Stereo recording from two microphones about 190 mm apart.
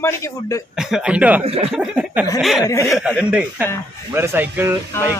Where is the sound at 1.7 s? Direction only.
5° right (ahead or behind).